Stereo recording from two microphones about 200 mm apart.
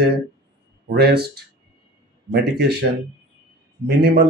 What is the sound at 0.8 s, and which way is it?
Speech, 50° right (ahead or behind).